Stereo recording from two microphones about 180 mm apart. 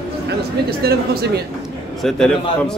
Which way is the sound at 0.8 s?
60° right (ahead or behind).